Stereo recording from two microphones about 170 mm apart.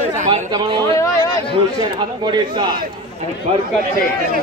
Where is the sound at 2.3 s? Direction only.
25° right (ahead or behind).